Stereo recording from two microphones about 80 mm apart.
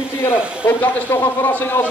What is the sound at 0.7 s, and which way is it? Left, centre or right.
A man's voice, left.